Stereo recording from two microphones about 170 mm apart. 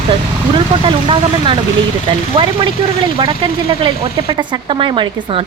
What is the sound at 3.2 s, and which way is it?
Speech, 30° right (ahead or behind).